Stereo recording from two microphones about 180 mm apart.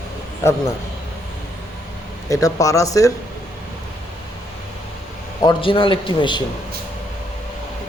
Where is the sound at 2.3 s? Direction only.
20° left (ahead or behind).